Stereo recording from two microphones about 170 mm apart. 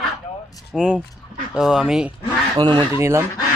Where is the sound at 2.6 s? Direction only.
25° right (ahead or behind).